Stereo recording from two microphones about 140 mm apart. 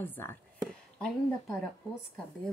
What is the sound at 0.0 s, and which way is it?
Speech, 15° left (ahead or behind).